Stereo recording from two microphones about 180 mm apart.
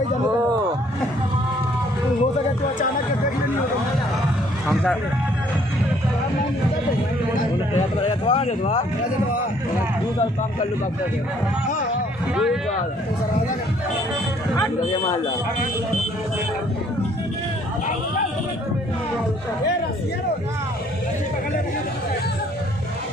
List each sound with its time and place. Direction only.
8.1 s speech: 30° left (ahead or behind)